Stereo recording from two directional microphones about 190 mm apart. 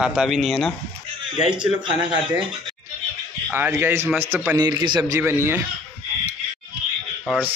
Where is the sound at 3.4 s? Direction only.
10° right (ahead or behind).